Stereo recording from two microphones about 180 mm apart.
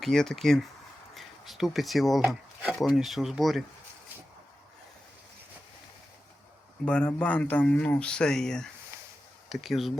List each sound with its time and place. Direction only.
0.0 s speech: centre (ahead or behind)
1.1 s a sound: centre (ahead or behind)
2.8 s speech: centre (ahead or behind)
6.8 s speech: 5° left (ahead or behind)